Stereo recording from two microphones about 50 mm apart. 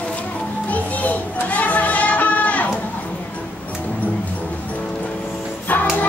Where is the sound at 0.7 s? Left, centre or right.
Left.